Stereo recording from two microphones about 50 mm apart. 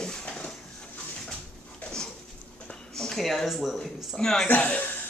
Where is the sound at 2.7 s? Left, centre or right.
Centre.